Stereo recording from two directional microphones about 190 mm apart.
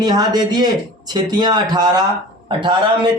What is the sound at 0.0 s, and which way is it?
A man's voice, 20° right (ahead or behind).